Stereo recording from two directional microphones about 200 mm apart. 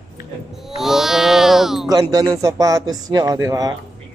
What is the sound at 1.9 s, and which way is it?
A man's voice, 20° right (ahead or behind).